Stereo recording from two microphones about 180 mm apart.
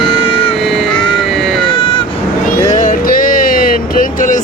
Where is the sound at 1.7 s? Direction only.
30° left (ahead or behind).